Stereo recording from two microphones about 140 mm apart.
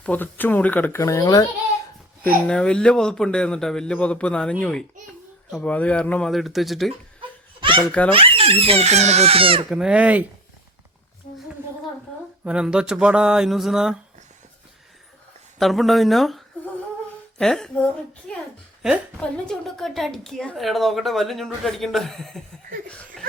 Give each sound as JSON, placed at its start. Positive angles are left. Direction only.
{"t": 0.0, "sound": "speech", "side_deg": 10}
{"t": 2.5, "sound": "speech", "side_deg": 5}
{"t": 5.6, "sound": "speech", "side_deg": 10}
{"t": 7.2, "sound": "laughter", "side_deg": -35}
{"t": 7.9, "sound": "speech", "side_deg": 10}
{"t": 8.1, "sound": "speech", "side_deg": -40}
{"t": 9.6, "sound": "speech", "side_deg": -5}
{"t": 12.5, "sound": "speech", "side_deg": -5}
{"t": 15.5, "sound": "speech", "side_deg": 0}